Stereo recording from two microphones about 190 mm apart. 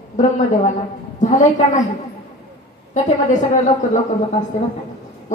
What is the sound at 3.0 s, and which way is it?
Speech, 40° left (ahead or behind).